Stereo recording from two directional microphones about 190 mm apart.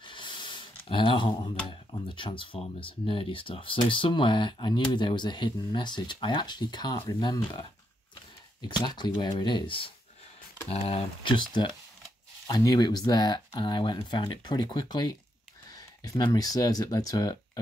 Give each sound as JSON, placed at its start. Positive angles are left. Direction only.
{"t": 0.0, "sound": "rub", "side_deg": 25}
{"t": 1.7, "sound": "speech", "side_deg": 25}
{"t": 12.4, "sound": "speech", "side_deg": 20}